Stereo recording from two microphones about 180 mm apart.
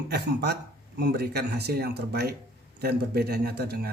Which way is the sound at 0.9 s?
65° right (ahead or behind).